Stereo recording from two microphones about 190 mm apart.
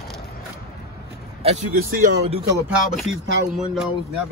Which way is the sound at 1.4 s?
35° right (ahead or behind).